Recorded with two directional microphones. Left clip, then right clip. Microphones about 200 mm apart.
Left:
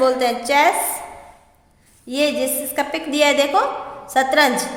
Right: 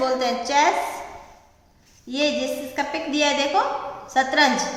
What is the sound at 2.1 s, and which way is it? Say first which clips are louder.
A woman's voice: left 3 dB; 50° left (ahead or behind).